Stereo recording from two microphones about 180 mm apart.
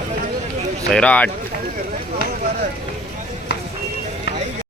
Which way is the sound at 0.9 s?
5° left (ahead or behind).